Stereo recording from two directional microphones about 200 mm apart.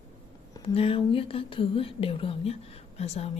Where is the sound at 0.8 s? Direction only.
30° left (ahead or behind).